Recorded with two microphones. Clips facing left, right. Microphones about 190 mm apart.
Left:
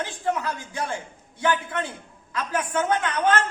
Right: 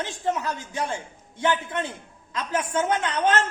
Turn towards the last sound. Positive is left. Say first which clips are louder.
# even
turn(degrees=-20)  # may be behind; listen again after turning